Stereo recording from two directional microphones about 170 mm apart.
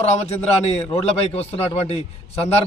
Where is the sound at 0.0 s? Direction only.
40° left (ahead or behind).